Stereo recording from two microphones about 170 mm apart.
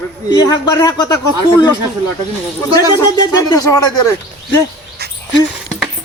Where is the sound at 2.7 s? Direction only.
20° left (ahead or behind).